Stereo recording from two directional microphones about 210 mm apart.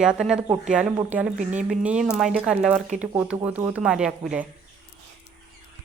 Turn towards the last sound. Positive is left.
turn(degrees=-5)  # may be behind; listen again after turning